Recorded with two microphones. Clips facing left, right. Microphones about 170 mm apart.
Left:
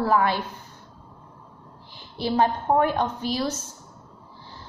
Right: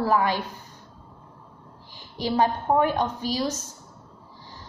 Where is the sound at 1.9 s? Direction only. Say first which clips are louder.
Left 1 dB; 15° right (ahead or behind).